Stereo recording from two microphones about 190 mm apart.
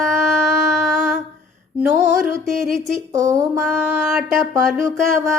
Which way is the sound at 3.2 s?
20° right (ahead or behind).